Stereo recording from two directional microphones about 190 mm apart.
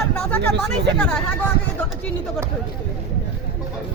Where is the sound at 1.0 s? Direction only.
5° left (ahead or behind).